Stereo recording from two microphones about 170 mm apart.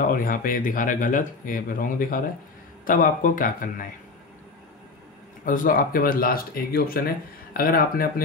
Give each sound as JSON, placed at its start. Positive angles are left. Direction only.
{"t": 0.0, "sound": "speech", "side_deg": 55}
{"t": 5.4, "sound": "speech", "side_deg": 55}